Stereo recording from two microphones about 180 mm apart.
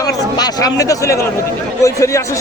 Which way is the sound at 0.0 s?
20° left (ahead or behind).